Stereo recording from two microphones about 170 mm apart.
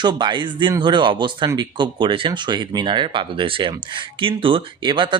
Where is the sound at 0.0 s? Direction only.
25° right (ahead or behind).